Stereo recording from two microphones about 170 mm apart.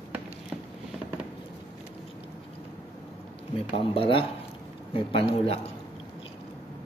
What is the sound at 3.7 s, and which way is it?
Speech, 35° left (ahead or behind).